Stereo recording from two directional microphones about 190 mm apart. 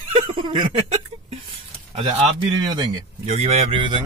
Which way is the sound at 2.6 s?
20° right (ahead or behind).